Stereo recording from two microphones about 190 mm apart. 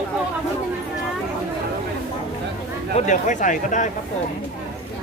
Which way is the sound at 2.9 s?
40° left (ahead or behind).